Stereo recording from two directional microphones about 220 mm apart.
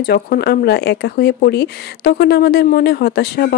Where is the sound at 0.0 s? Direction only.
45° left (ahead or behind).